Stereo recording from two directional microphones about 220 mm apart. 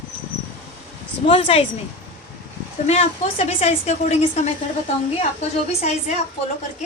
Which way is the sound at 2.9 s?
30° left (ahead or behind).